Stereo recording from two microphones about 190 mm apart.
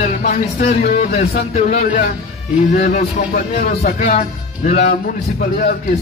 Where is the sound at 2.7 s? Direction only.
40° left (ahead or behind).